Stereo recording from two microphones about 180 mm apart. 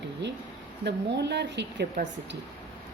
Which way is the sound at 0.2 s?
70° right (ahead or behind).